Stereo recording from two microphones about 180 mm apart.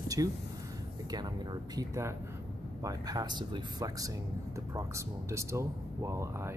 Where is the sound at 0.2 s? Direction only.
20° right (ahead or behind).